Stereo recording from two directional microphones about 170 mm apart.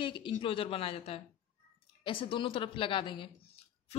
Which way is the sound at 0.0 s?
30° left (ahead or behind).